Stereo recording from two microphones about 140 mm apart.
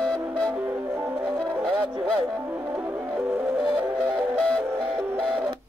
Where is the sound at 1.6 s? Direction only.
35° right (ahead or behind).